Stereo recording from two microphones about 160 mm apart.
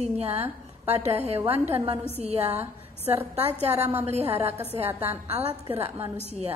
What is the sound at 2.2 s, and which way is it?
A woman's voice, 40° right (ahead or behind).